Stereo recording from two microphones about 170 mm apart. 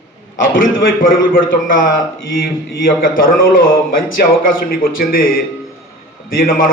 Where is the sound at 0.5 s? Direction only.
55° left (ahead or behind).